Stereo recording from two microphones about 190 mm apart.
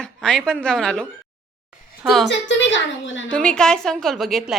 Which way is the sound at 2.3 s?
70° left (ahead or behind).